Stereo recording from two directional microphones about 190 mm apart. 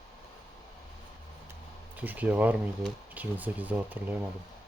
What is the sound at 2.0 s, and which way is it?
Speech, 10° right (ahead or behind).